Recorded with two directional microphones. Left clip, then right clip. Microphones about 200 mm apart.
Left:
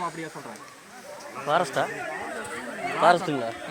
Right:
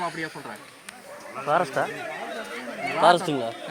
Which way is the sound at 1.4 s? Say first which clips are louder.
Right 1 dB; 10° right (ahead or behind).